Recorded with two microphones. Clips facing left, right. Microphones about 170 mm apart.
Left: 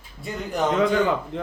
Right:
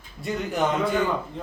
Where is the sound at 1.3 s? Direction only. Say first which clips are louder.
Left 6 dB; 80° left.